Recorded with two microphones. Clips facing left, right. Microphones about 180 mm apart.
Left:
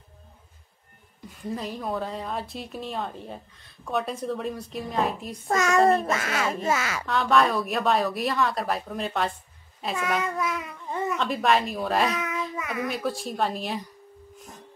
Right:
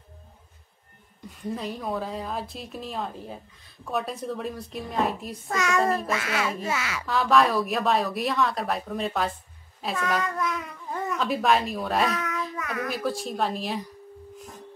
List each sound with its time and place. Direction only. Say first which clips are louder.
1.3 s a woman's voice: even; centre (ahead or behind)
5.5 s speech: left 3 dB; 45° left (ahead or behind)
5.8 s a child's voice: left 6 dB; 30° left (ahead or behind)
6.0 s speech: left 1 dB; 45° left (ahead or behind)
7.1 s a woman's voice: right 1 dB; centre (ahead or behind)